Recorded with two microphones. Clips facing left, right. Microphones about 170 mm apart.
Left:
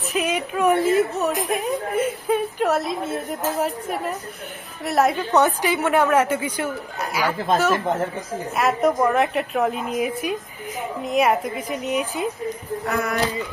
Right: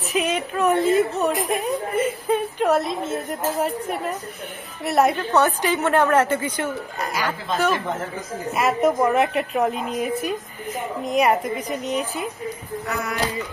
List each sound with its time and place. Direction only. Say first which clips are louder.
0.1 s a woman's voice: right 1 dB; 5° left (ahead or behind)
5.3 s a woman's voice: left 1 dB; 15° left (ahead or behind)
8.5 s a woman's voice: even; centre (ahead or behind)
12.8 s speech: left 4 dB; 50° left (ahead or behind)